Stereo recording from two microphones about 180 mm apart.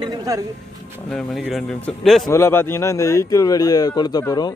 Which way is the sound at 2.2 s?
15° left (ahead or behind).